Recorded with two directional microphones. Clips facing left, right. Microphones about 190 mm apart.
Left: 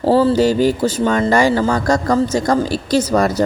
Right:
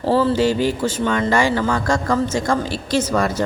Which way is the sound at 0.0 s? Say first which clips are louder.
Left 4 dB; 40° left (ahead or behind).